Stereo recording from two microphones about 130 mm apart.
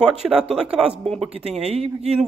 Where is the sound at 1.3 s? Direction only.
55° right (ahead or behind).